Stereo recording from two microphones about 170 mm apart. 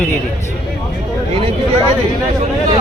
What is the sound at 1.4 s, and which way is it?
Speech, 35° right (ahead or behind).